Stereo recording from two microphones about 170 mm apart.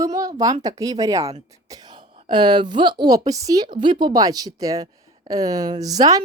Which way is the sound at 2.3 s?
25° right (ahead or behind).